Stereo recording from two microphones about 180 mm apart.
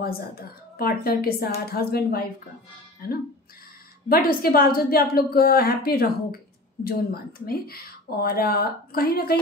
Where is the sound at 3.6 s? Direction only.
55° left (ahead or behind).